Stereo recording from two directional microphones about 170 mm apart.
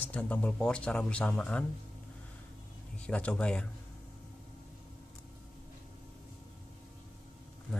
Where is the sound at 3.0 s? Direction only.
5° left (ahead or behind).